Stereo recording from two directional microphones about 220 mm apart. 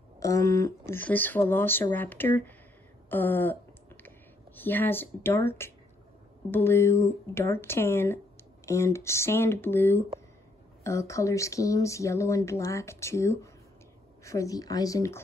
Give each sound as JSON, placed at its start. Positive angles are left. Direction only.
{"t": 0.2, "sound": "speech", "side_deg": 15}
{"t": 3.1, "sound": "a sound", "side_deg": 10}
{"t": 4.6, "sound": "speech", "side_deg": 10}